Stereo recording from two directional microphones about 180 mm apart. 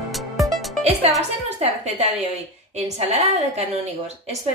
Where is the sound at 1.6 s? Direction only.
35° right (ahead or behind).